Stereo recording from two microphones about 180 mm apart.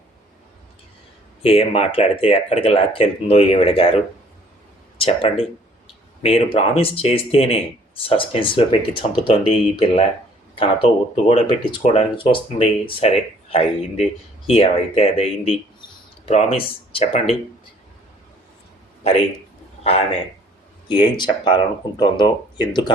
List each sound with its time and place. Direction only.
1.4 s speech: 30° left (ahead or behind)
4.9 s speech: 35° left (ahead or behind)
19.8 s a man's voice: 35° left (ahead or behind)